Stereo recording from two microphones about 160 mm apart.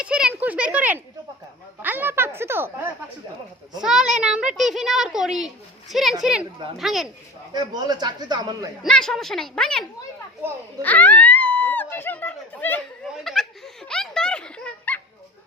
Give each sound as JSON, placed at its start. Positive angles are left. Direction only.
{"t": 0.0, "sound": "a sound", "side_deg": -5}
{"t": 1.8, "sound": "speech", "side_deg": -10}
{"t": 3.8, "sound": "a child's voice", "side_deg": -5}
{"t": 7.5, "sound": "speech", "side_deg": -25}
{"t": 8.8, "sound": "a child's voice", "side_deg": 5}
{"t": 10.8, "sound": "speech", "side_deg": 10}
{"t": 13.1, "sound": "giggle", "side_deg": 0}